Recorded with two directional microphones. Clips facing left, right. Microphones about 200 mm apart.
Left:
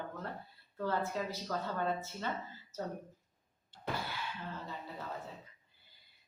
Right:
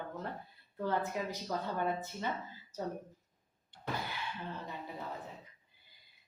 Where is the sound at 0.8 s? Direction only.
15° right (ahead or behind).